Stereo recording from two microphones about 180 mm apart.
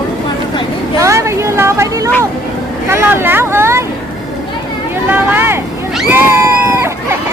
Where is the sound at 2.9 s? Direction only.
15° right (ahead or behind).